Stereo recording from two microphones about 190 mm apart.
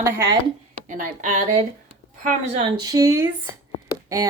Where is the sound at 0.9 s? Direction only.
40° right (ahead or behind).